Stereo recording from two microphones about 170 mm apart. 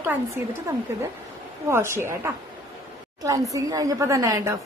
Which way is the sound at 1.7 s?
15° right (ahead or behind).